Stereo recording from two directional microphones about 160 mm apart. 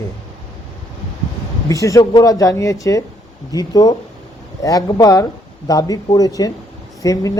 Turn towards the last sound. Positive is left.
turn(degrees=20)  # may be behind; listen again after turning